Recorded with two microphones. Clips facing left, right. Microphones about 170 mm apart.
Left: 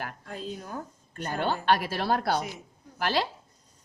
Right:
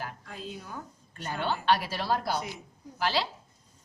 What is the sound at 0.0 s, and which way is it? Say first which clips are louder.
A woman's voice: left 3 dB; 45° left (ahead or behind).